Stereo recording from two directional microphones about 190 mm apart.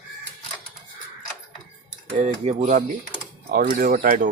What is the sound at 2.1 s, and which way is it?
Speech, 40° right (ahead or behind).